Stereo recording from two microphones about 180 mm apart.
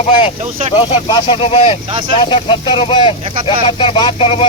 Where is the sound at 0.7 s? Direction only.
25° left (ahead or behind).